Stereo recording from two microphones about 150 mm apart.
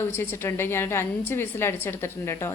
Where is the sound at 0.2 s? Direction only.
15° left (ahead or behind).